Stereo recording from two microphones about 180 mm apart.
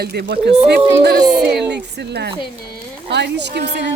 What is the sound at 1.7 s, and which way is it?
A woman's voice, 70° right (ahead or behind).